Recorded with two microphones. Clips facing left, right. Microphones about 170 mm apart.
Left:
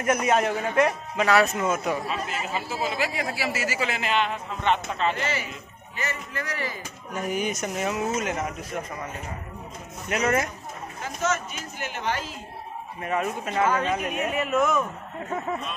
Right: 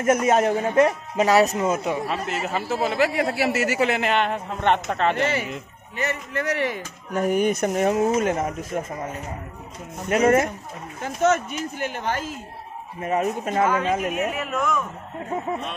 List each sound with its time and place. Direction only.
0.0 s a man's voice: 45° right (ahead or behind)
2.0 s a man's voice: 55° right (ahead or behind)
10.0 s a man's voice: 40° right (ahead or behind)
11.0 s a man's voice: 60° right (ahead or behind)
11.9 s a man's voice: 45° right (ahead or behind)
14.1 s speech: centre (ahead or behind)